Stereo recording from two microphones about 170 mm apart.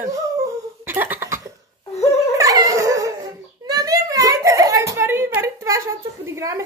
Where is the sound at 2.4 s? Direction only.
20° right (ahead or behind).